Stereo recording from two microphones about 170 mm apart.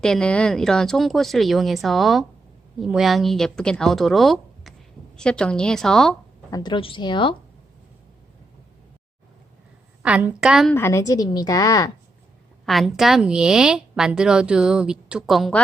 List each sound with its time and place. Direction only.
0.0 s a woman's voice: 5° left (ahead or behind)
6.5 s a woman's voice: 25° left (ahead or behind)
10.0 s a woman's voice: 10° right (ahead or behind)
10.8 s a woman's voice: 15° left (ahead or behind)
12.6 s a woman's voice: centre (ahead or behind)